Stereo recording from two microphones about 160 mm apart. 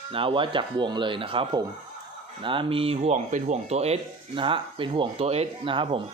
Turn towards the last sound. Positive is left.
turn(degrees=-30)  # may be behind; listen again after turning